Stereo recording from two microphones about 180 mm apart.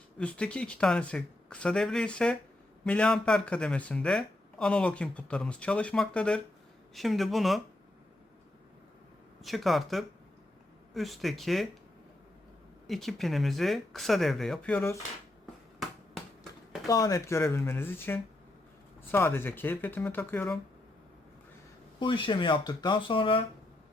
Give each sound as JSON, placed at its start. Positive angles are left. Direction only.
{"t": 0.2, "sound": "speech", "side_deg": 5}
{"t": 9.4, "sound": "speech", "side_deg": 0}
{"t": 12.9, "sound": "speech", "side_deg": 0}
{"t": 15.8, "sound": "basketball bounce", "side_deg": 0}
{"t": 16.8, "sound": "speech", "side_deg": 20}
{"t": 21.9, "sound": "speech", "side_deg": 30}